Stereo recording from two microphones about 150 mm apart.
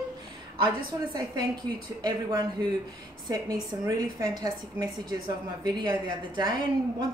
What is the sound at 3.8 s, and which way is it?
A woman's voice, 25° right (ahead or behind).